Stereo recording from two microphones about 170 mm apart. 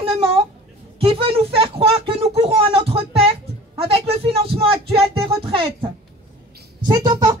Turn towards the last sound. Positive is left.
turn(degrees=-25)  # may be behind; listen again after turning